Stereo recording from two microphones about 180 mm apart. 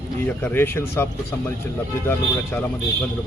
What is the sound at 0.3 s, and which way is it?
Speech, 10° left (ahead or behind).